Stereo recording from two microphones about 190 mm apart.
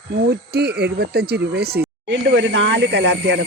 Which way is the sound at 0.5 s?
60° right (ahead or behind).